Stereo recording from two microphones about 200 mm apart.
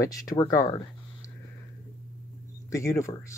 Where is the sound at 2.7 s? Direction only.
15° left (ahead or behind).